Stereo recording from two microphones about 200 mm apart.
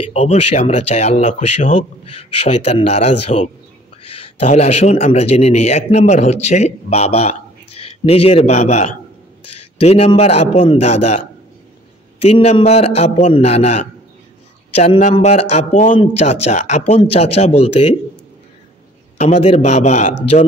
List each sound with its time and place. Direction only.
0.1 s speech: 35° left (ahead or behind)
19.1 s speech: 35° left (ahead or behind)